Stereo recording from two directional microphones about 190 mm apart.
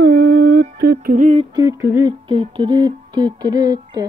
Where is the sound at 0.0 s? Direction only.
55° right (ahead or behind).